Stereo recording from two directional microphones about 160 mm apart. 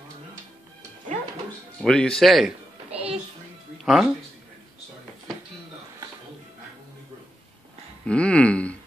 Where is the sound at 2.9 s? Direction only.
40° right (ahead or behind).